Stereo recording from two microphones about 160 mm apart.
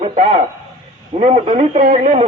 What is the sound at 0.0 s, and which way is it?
A man's voice, 40° right (ahead or behind).